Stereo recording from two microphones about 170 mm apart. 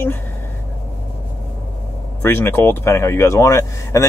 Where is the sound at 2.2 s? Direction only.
10° left (ahead or behind).